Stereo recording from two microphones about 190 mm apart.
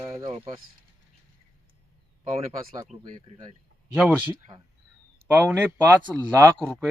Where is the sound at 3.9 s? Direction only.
5° right (ahead or behind).